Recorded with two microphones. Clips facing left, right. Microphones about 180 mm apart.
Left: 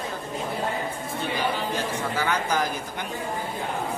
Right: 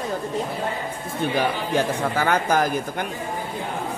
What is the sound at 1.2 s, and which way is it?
Speech, 55° right (ahead or behind).